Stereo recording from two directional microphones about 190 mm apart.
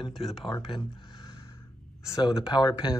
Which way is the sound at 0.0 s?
Centre (ahead or behind).